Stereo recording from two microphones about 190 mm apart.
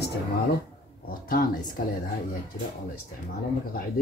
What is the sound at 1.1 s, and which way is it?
Speech, 50° left (ahead or behind).